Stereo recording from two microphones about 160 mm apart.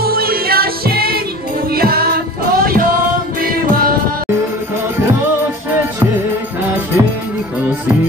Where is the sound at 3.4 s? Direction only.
65° right (ahead or behind).